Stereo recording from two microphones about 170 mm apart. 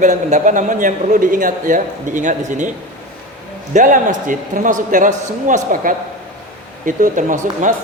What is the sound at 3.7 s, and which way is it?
A man's voice, 50° right (ahead or behind).